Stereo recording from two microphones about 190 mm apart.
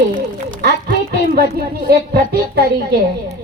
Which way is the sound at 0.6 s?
55° right (ahead or behind).